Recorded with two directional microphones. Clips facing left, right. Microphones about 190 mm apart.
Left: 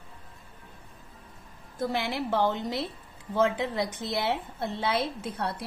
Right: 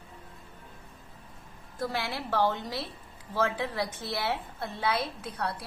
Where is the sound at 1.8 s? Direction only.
25° left (ahead or behind).